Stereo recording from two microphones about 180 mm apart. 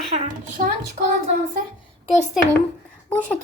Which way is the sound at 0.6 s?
50° right (ahead or behind).